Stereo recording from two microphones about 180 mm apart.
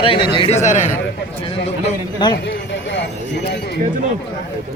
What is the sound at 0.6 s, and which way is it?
Speech, 40° left (ahead or behind).